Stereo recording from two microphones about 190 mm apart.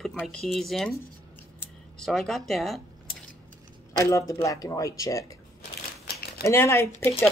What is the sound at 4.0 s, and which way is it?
Speech, 15° left (ahead or behind).